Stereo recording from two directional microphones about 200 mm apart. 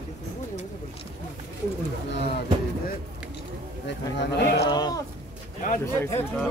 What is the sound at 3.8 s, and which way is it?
Speech, 60° left (ahead or behind).